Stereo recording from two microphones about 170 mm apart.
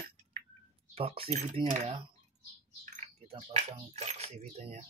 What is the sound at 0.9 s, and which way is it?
Speech, 35° right (ahead or behind).